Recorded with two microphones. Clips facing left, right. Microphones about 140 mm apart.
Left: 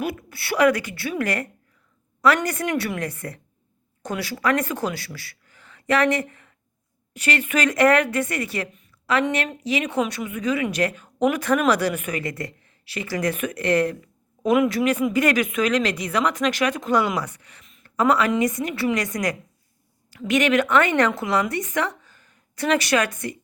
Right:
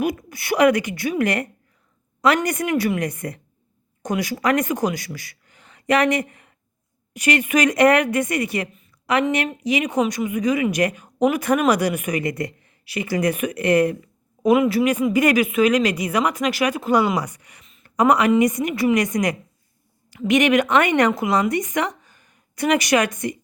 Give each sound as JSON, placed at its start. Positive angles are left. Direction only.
{"t": 0.0, "sound": "a woman's voice", "side_deg": -15}